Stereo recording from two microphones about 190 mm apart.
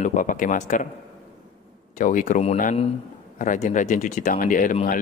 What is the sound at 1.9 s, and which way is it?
Speech, 40° left (ahead or behind).